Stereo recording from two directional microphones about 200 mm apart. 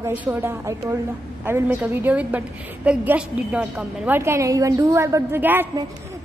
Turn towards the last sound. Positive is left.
turn(degrees=-10)  # may be behind; listen again after turning